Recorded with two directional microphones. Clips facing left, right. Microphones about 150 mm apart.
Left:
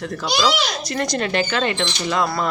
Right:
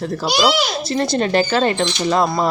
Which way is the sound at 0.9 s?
30° right (ahead or behind).